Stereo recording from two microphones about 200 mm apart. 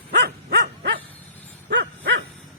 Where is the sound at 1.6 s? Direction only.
60° right (ahead or behind).